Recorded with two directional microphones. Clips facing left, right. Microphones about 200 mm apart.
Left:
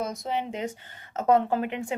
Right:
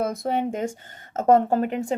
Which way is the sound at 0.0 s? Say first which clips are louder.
Right 6 dB; 55° right (ahead or behind).